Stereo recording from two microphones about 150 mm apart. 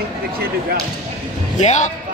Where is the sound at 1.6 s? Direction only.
55° left (ahead or behind).